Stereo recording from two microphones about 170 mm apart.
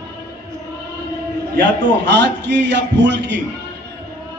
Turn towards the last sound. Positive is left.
turn(degrees=-90)